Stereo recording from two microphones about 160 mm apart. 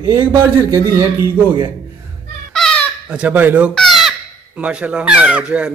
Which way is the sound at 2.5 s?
Centre (ahead or behind).